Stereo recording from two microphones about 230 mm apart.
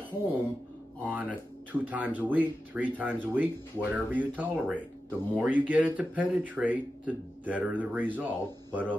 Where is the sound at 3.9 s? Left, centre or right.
Centre.